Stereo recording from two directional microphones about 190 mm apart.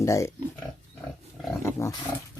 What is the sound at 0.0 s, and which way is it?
Speech, 15° left (ahead or behind).